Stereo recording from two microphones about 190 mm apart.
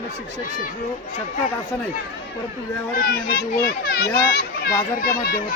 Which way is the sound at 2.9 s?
50° left (ahead or behind).